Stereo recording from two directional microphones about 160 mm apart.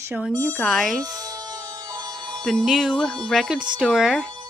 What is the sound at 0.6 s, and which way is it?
Speech, centre (ahead or behind).